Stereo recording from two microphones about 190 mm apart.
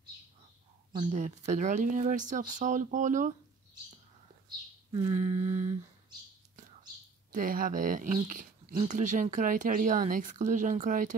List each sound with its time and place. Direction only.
1.1 s speech: 40° right (ahead or behind)
5.1 s speech: 35° right (ahead or behind)
7.3 s speech: 45° right (ahead or behind)